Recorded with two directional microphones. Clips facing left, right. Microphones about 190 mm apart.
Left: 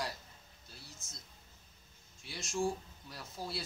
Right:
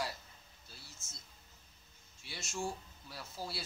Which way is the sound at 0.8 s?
Centre (ahead or behind).